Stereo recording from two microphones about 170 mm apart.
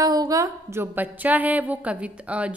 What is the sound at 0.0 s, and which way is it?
A woman's voice, 20° right (ahead or behind).